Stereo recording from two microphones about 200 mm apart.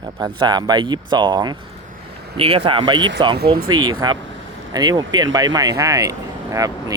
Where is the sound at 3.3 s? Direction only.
50° right (ahead or behind).